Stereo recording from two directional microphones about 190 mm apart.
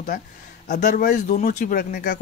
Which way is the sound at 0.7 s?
40° left (ahead or behind).